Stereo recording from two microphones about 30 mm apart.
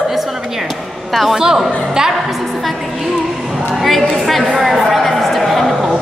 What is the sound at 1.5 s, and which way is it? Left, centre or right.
Speech, centre.